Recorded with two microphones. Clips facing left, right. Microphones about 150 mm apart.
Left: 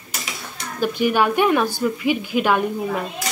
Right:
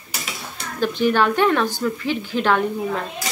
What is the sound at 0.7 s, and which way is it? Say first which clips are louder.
Speech: even; 10° left (ahead or behind).